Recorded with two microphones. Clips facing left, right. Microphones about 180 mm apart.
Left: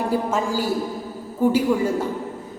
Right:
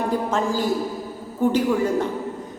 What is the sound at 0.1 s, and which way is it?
A woman's voice, 10° left (ahead or behind).